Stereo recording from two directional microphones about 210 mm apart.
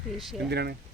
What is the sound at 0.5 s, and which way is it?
Speech, 50° right (ahead or behind).